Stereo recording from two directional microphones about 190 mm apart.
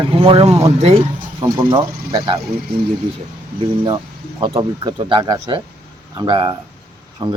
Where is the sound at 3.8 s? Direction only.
25° right (ahead or behind).